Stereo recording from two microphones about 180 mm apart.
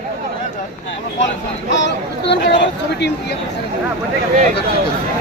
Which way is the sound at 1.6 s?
80° left.